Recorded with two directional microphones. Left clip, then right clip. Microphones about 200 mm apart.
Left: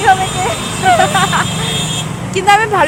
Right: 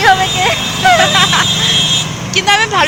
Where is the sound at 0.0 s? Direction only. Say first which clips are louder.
Right 2 dB; centre (ahead or behind).